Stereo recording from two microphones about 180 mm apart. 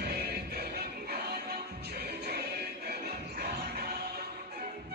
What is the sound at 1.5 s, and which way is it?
Music, 60° right (ahead or behind).